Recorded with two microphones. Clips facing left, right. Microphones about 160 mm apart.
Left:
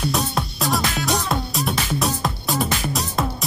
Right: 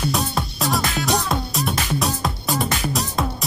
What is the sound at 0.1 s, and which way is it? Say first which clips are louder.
Music: even; centre (ahead or behind).